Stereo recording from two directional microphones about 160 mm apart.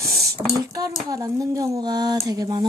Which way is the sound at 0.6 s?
25° right (ahead or behind).